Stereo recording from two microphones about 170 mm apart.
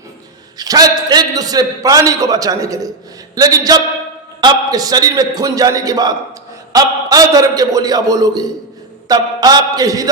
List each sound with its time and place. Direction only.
0.6 s a man's voice: 20° right (ahead or behind)